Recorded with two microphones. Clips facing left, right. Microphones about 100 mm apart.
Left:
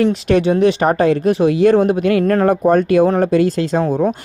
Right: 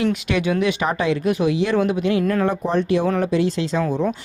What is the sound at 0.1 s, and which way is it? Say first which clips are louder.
Speech: left 7 dB; 35° left (ahead or behind).